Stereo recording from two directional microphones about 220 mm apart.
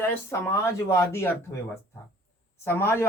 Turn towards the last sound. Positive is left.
turn(degrees=10)  # may be behind; listen again after turning